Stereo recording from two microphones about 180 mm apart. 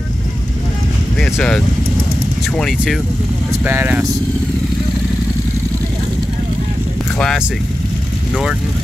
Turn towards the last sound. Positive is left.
turn(degrees=0)  # may be behind; listen again after turning